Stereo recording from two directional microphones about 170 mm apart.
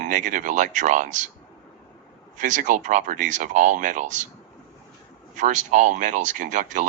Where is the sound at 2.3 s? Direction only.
50° right (ahead or behind).